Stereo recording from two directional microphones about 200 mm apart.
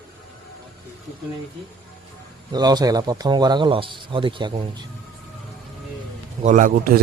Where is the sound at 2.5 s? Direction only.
20° right (ahead or behind).